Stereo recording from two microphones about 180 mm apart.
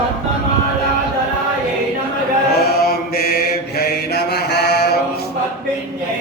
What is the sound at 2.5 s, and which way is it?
Mantra, 60° left (ahead or behind).